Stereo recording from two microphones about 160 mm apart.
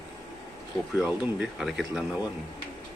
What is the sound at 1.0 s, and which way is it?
Speech, 10° right (ahead or behind).